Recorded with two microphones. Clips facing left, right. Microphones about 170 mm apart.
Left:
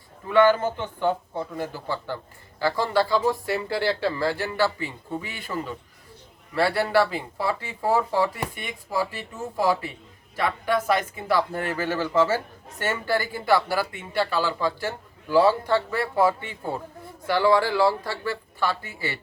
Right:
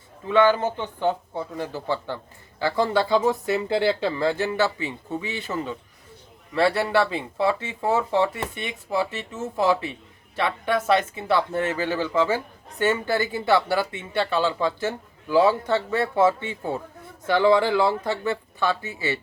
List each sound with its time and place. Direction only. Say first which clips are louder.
0.3 s speech: even; 20° right (ahead or behind)
2.6 s speech: right 1 dB; 20° right (ahead or behind)